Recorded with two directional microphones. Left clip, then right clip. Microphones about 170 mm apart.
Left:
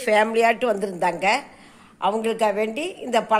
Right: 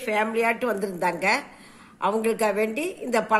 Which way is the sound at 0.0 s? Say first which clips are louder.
Left 5 dB; 40° left (ahead or behind).